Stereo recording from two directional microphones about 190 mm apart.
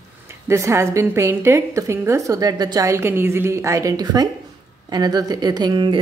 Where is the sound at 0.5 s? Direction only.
15° right (ahead or behind).